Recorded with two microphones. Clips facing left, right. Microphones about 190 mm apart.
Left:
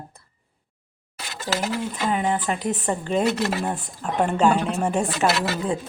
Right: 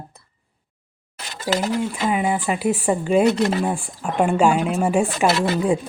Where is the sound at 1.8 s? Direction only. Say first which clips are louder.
Right 3 dB; 10° right (ahead or behind).